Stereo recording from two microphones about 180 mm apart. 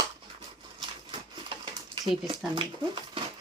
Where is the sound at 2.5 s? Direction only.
25° right (ahead or behind).